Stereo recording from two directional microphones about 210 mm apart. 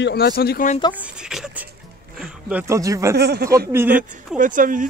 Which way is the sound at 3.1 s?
50° right (ahead or behind).